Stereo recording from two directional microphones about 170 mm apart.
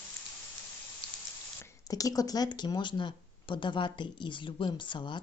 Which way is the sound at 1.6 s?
20° left (ahead or behind).